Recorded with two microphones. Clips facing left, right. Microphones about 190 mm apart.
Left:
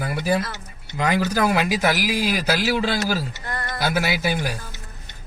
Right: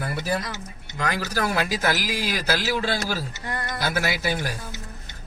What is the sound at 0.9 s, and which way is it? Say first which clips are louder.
A man's voice: left 6 dB; 15° left (ahead or behind).